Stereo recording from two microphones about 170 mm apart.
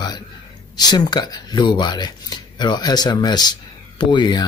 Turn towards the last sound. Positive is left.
turn(degrees=25)  # may be behind; listen again after turning